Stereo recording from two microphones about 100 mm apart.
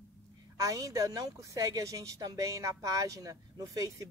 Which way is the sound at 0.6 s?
35° right (ahead or behind).